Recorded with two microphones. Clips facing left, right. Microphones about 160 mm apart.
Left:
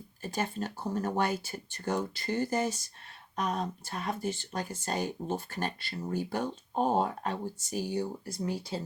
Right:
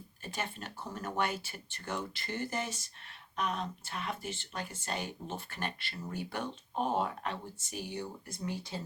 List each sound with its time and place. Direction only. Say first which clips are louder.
0.2 s speech: left 7 dB; 40° left (ahead or behind)